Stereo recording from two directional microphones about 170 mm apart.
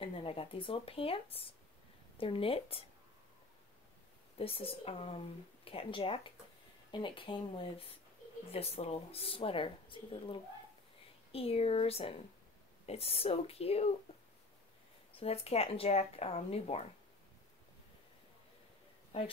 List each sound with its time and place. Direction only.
0.0 s speech: 30° left (ahead or behind)
4.4 s speech: 35° left (ahead or behind)
14.1 s a sound: 35° left (ahead or behind)
15.1 s speech: 35° left (ahead or behind)